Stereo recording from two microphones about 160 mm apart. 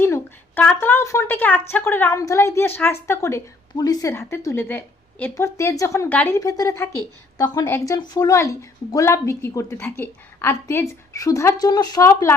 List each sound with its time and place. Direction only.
0.0 s a woman's voice: 15° left (ahead or behind)